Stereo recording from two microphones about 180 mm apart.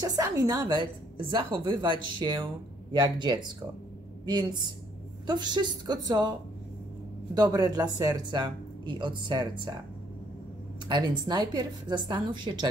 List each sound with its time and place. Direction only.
0.0 s speech: 20° right (ahead or behind)
7.3 s speech: 20° right (ahead or behind)
10.9 s speech: 25° right (ahead or behind)